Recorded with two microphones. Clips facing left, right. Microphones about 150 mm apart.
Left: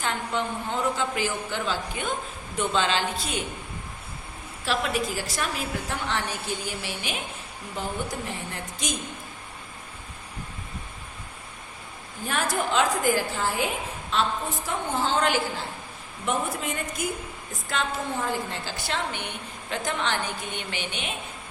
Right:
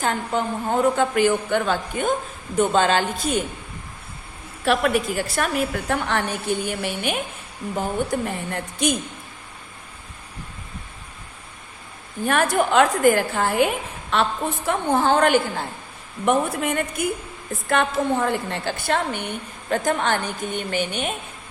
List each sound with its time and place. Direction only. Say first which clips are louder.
0.0 s a woman's voice: right 5 dB; 45° right (ahead or behind)
4.6 s a woman's voice: right 7 dB; 60° right (ahead or behind)
8.4 s a woman's voice: right 9 dB; 60° right (ahead or behind)
12.2 s a woman's voice: right 7 dB; 60° right (ahead or behind)